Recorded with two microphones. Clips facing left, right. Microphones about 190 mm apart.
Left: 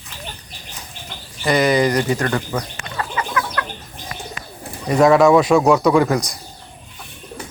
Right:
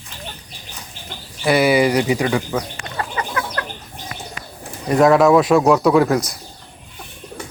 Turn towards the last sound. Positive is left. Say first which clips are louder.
# right 1 dB
turn(degrees=-5)  # may be behind; listen again after turning